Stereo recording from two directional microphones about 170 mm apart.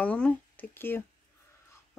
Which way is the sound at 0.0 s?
10° left (ahead or behind).